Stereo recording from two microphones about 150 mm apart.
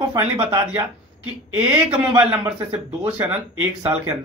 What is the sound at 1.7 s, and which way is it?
Speech, 10° right (ahead or behind).